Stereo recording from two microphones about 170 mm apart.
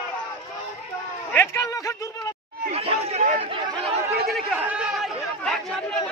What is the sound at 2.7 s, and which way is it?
Chatter, 35° right (ahead or behind).